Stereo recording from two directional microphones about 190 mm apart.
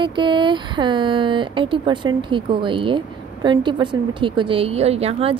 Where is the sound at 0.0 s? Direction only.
25° right (ahead or behind).